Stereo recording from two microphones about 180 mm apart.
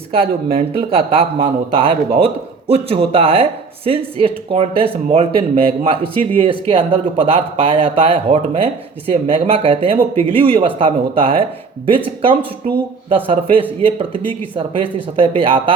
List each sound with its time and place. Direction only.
0.5 s speech: 30° right (ahead or behind)